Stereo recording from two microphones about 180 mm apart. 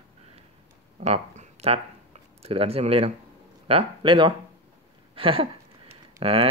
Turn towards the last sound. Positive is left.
turn(degrees=-35)  # may be behind; listen again after turning